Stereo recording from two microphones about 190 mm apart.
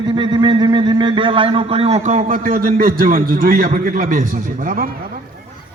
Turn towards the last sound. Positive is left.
turn(degrees=-50)  # may be behind; listen again after turning